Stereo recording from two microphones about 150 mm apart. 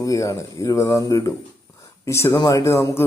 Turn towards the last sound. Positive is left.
turn(degrees=20)  # may be behind; listen again after turning